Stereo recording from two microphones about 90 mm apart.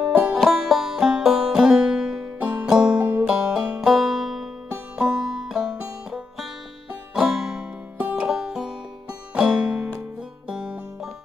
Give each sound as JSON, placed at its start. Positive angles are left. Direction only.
{"t": 0.0, "sound": "music", "side_deg": -10}
{"t": 3.9, "sound": "music", "side_deg": -5}
{"t": 4.9, "sound": "banjo", "side_deg": -5}
{"t": 6.9, "sound": "music", "side_deg": -5}